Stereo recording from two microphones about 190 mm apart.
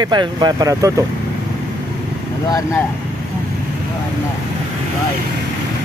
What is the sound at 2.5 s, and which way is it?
Speech, 20° left (ahead or behind).